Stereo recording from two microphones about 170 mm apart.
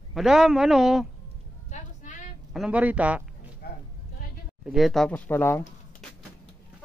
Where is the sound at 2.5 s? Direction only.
5° right (ahead or behind).